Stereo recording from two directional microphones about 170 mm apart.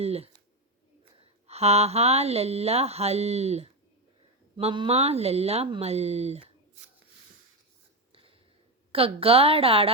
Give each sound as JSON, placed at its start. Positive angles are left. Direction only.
{"t": 0.0, "sound": "speech", "side_deg": -35}
{"t": 4.5, "sound": "speech", "side_deg": -30}
{"t": 8.9, "sound": "speech", "side_deg": -35}